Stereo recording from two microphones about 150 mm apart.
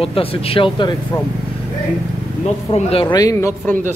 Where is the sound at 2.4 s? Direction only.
40° left (ahead or behind).